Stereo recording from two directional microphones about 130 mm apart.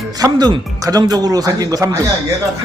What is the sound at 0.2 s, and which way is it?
Speech, 30° right (ahead or behind).